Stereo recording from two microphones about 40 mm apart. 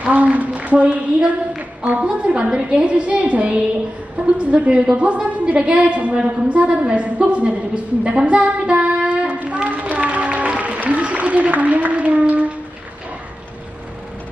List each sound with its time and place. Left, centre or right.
0.0 s a woman's voice: right
9.3 s a sound: right
9.9 s applause: right